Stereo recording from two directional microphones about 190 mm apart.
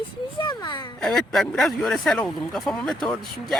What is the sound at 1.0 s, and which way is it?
Speech, centre (ahead or behind).